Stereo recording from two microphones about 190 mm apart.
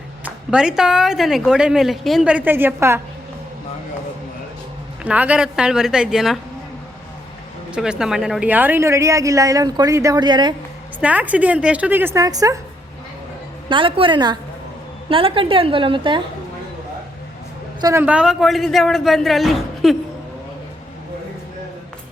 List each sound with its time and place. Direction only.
0.3 s a woman's voice: 5° right (ahead or behind)
5.0 s a man's voice: 5° right (ahead or behind)
7.7 s a woman's voice: 5° right (ahead or behind); by 10.5 s 25° right (ahead or behind)
11.0 s a woman's voice: 10° right (ahead or behind)
13.7 s a woman's voice: 25° right (ahead or behind)
17.7 s a man's voice: 15° right (ahead or behind); by 20.0 s centre (ahead or behind)